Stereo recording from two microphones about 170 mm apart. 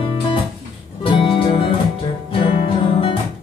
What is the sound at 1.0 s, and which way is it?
Music, 30° left (ahead or behind).